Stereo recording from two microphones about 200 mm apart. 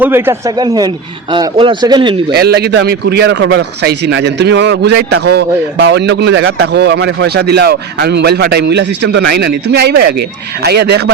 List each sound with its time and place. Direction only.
0.0 s a man's voice: 10° right (ahead or behind)
2.3 s a man's voice: 55° right (ahead or behind)